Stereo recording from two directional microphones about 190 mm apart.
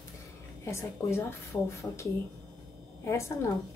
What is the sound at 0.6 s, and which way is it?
A woman's voice, 15° left (ahead or behind).